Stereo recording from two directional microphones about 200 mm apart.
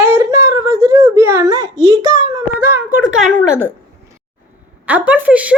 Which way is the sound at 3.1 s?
5° right (ahead or behind).